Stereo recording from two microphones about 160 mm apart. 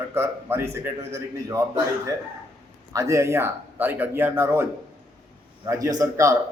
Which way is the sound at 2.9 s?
20° right (ahead or behind).